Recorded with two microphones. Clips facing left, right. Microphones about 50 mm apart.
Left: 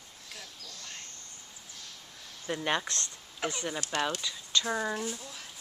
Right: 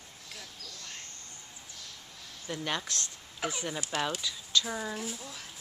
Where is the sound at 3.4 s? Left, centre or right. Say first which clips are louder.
Left 1 dB; centre.